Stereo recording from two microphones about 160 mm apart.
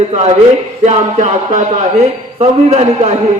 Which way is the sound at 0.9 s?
50° right (ahead or behind).